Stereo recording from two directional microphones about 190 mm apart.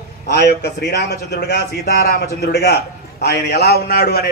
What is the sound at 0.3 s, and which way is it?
A man's voice, 60° left (ahead or behind).